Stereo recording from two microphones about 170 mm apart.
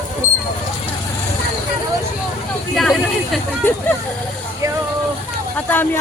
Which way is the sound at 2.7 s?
Centre (ahead or behind).